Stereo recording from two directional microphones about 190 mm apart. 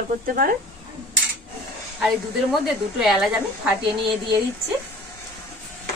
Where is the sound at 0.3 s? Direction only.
50° right (ahead or behind).